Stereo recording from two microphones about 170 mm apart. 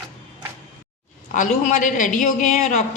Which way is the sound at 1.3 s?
45° left (ahead or behind).